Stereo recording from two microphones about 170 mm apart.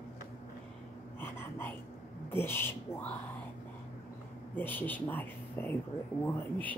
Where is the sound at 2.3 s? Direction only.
15° left (ahead or behind).